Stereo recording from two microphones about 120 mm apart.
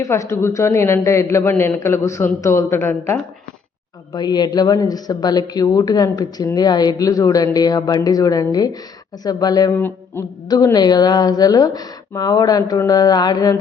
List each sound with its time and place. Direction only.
0.0 s a man's voice: 25° left (ahead or behind)
4.1 s speech: 35° left (ahead or behind)
9.7 s speech: 20° left (ahead or behind)
10.5 s speech: 30° left (ahead or behind)